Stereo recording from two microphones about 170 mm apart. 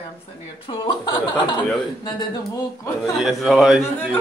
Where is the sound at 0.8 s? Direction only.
30° left (ahead or behind).